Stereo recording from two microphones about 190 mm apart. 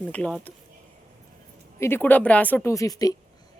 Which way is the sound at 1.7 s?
15° left (ahead or behind).